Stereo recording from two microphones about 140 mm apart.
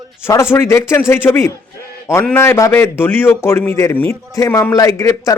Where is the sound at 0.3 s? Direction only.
20° left (ahead or behind).